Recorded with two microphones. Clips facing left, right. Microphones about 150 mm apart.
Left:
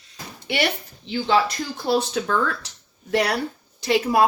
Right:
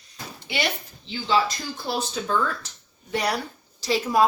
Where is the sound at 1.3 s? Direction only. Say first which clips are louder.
Left 2 dB; 65° left (ahead or behind).